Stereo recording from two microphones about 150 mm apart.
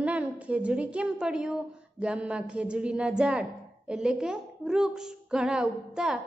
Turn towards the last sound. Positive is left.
turn(degrees=-5)  # may be behind; listen again after turning